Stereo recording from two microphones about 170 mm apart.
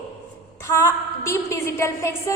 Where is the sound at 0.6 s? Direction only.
15° left (ahead or behind).